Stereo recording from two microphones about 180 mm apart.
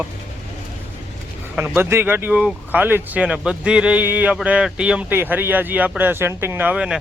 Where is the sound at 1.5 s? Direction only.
10° right (ahead or behind).